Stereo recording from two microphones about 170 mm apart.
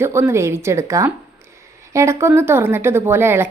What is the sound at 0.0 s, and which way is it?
A woman's voice, 15° right (ahead or behind).